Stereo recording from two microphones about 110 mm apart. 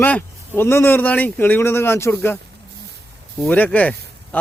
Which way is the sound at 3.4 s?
15° left (ahead or behind).